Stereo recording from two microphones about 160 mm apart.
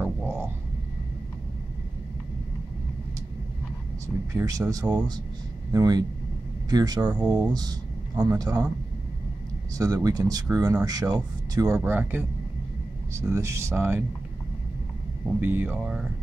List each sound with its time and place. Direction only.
0.0 s a sound: 10° right (ahead or behind)
4.3 s speech: 20° right (ahead or behind)
9.8 s speech: 20° right (ahead or behind)
15.4 s speech: 10° right (ahead or behind)